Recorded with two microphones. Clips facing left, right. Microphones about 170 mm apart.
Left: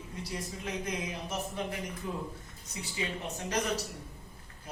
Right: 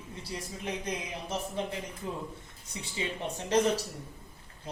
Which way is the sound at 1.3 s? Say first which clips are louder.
Right 5 dB; 30° right (ahead or behind).